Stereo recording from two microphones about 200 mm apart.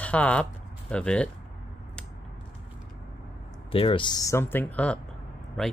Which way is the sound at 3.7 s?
25° left (ahead or behind).